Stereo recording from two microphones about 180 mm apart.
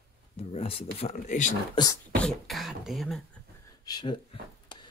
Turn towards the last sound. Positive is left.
turn(degrees=25)  # may be behind; listen again after turning